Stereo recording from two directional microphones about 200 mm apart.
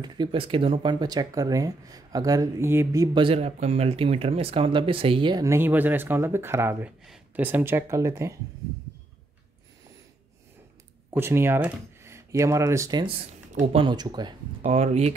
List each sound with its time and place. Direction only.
0.0 s speech: 20° right (ahead or behind)
11.1 s speech: 10° right (ahead or behind)
14.7 s speech: 35° right (ahead or behind)